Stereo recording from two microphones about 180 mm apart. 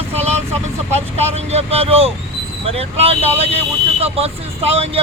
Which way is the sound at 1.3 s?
35° right (ahead or behind).